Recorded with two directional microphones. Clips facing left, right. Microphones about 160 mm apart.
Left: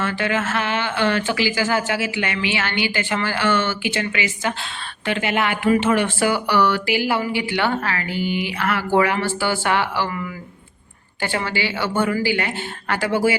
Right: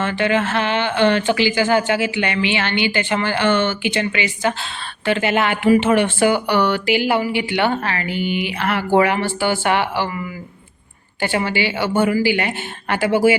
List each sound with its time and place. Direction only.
0.0 s speech: 25° right (ahead or behind)
5.6 s speech: 15° right (ahead or behind)
11.2 s a woman's voice: 15° right (ahead or behind)